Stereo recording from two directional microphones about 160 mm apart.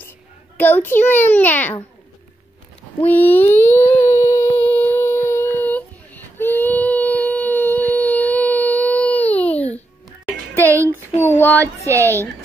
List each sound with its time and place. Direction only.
0.6 s a child's voice: 10° left (ahead or behind)
3.1 s a sound: 10° left (ahead or behind)
4.6 s child singing: 10° left (ahead or behind)
10.5 s a sound: 10° left (ahead or behind)
11.3 s child singing: 10° left (ahead or behind)
11.6 s a woman's voice: 15° right (ahead or behind)